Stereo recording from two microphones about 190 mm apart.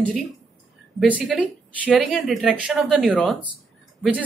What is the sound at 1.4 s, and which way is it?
Speech, 5° left (ahead or behind).